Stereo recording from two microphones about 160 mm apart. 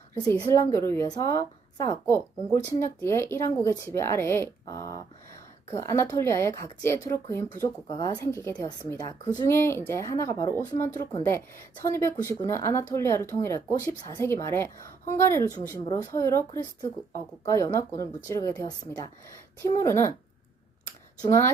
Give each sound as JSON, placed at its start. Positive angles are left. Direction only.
{"t": 0.1, "sound": "a woman's voice", "side_deg": 15}
{"t": 21.2, "sound": "a woman's voice", "side_deg": 15}